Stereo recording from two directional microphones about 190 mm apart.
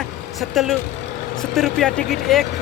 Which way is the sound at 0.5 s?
Centre (ahead or behind).